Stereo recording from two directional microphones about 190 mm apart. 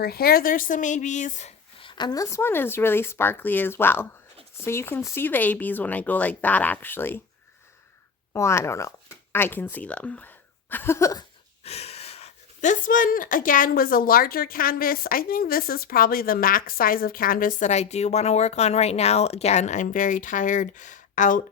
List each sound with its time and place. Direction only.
0.0 s speech: 55° left (ahead or behind); by 7.2 s 10° left (ahead or behind)
8.3 s speech: 15° left (ahead or behind)
11.6 s speech: 30° left (ahead or behind)